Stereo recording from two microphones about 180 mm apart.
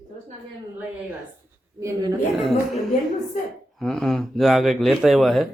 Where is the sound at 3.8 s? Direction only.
Centre (ahead or behind).